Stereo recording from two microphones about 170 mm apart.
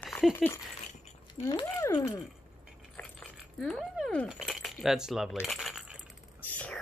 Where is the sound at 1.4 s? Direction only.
40° left (ahead or behind).